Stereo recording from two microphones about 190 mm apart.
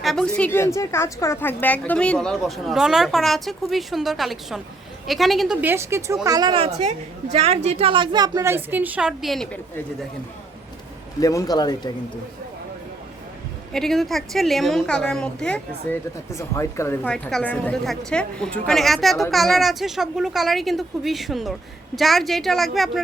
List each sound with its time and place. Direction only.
0.0 s a sound: centre (ahead or behind)
0.3 s a woman's voice: 10° left (ahead or behind)
11.2 s speech: 20° left (ahead or behind)
13.7 s a woman's voice: centre (ahead or behind)